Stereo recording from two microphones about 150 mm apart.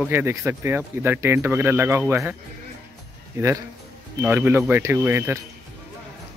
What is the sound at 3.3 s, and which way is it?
Speech, 20° right (ahead or behind).